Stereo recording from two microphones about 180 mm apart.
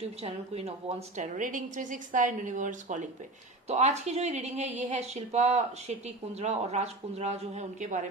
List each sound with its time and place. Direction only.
0.0 s a woman's voice: 35° right (ahead or behind)